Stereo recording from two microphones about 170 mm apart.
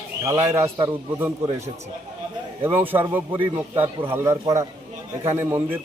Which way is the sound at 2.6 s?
10° right (ahead or behind).